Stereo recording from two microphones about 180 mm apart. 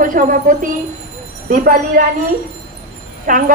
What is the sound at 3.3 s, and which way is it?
Speech, 50° right (ahead or behind).